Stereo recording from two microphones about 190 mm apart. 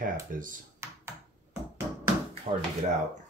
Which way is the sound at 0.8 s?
15° right (ahead or behind).